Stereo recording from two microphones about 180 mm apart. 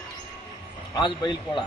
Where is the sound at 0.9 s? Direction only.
25° left (ahead or behind).